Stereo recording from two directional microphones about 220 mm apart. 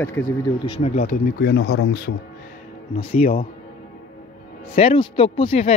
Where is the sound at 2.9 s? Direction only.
25° left (ahead or behind).